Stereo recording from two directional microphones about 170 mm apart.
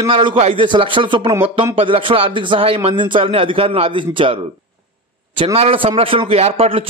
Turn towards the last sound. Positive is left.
turn(degrees=-35)  # may be behind; listen again after turning